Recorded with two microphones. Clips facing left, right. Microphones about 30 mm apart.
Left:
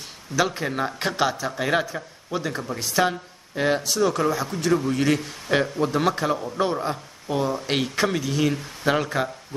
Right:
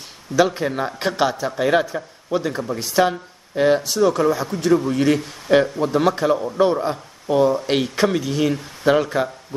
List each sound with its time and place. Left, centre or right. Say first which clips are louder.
0.4 s speech: right 5 dB; centre